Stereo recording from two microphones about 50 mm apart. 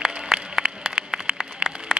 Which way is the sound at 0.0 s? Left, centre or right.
Centre.